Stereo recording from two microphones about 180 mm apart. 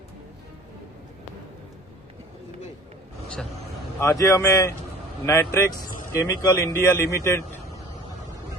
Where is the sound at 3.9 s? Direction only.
15° left (ahead or behind).